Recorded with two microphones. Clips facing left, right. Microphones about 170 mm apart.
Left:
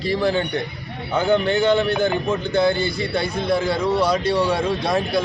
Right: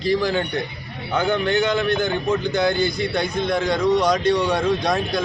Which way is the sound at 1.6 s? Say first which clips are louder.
Left 2 dB; 30° left (ahead or behind).